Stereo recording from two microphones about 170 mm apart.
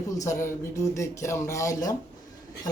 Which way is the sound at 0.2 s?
15° left (ahead or behind).